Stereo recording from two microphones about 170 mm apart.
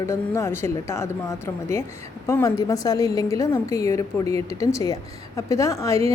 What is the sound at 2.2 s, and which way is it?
A woman's voice, 15° left (ahead or behind).